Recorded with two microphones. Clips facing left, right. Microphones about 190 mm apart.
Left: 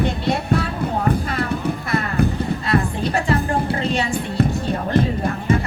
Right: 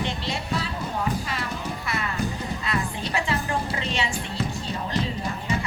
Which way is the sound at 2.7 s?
50° left (ahead or behind).